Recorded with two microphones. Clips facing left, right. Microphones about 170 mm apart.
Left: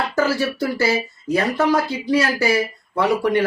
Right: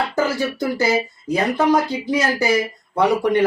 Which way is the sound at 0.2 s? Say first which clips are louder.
Left 2 dB; 15° right (ahead or behind).